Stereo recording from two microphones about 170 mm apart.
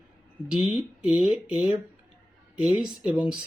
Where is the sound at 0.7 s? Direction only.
5° right (ahead or behind).